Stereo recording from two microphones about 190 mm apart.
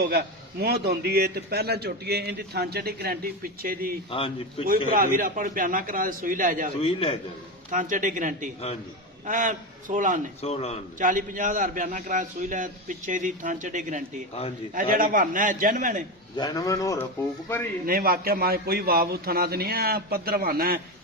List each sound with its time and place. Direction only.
0.0 s a man's voice: 55° right (ahead or behind)
4.1 s a man's voice: 30° left (ahead or behind)
4.9 s a man's voice: 45° right (ahead or behind)
6.7 s a man's voice: 30° left (ahead or behind)
7.7 s a man's voice: 45° right (ahead or behind)
10.4 s a man's voice: 35° left (ahead or behind)
11.0 s a man's voice: 45° right (ahead or behind)
16.3 s speech: 20° left (ahead or behind)
17.8 s a man's voice: 50° right (ahead or behind)